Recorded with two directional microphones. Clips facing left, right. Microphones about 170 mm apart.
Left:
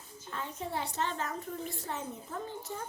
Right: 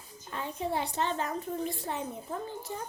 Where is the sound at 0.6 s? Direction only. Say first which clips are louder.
Right 4 dB; 15° right (ahead or behind).